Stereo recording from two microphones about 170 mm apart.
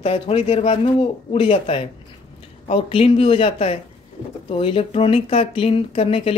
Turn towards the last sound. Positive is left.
turn(degrees=35)  # may be behind; listen again after turning